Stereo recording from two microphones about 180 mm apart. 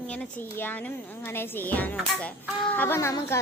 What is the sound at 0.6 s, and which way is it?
A child's voice, 10° left (ahead or behind).